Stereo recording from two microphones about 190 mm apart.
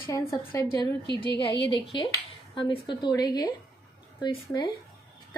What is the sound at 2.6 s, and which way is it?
A woman's voice, 25° left (ahead or behind).